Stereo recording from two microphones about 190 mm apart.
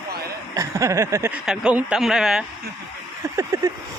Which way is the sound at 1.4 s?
5° right (ahead or behind).